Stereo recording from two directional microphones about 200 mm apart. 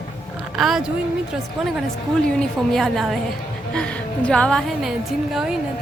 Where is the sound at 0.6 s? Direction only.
Centre (ahead or behind).